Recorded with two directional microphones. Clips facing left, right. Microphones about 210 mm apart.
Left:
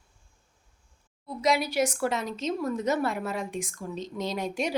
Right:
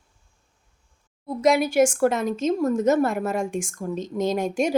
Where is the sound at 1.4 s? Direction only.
50° right (ahead or behind).